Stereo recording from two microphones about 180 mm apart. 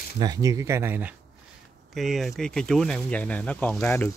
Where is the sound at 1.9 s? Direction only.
Centre (ahead or behind).